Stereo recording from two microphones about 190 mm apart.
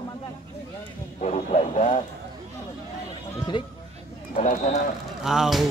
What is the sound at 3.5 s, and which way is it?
Speech, 25° left (ahead or behind).